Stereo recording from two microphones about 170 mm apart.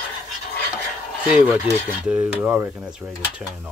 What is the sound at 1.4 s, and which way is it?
Speech, 10° right (ahead or behind).